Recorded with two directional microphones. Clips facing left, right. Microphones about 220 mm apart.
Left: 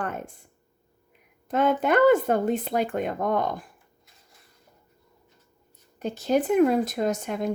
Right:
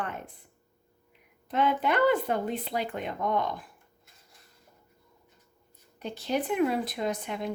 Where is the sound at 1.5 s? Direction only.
45° left (ahead or behind).